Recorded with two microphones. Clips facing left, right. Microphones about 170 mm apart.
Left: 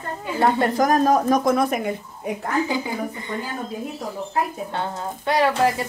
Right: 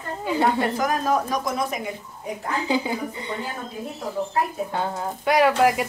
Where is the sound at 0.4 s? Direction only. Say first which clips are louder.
Left 4 dB; 45° left (ahead or behind).